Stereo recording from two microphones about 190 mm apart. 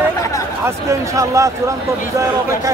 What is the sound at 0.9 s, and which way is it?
Speech, 15° right (ahead or behind).